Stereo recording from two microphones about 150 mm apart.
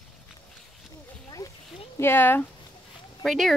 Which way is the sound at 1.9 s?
15° left (ahead or behind).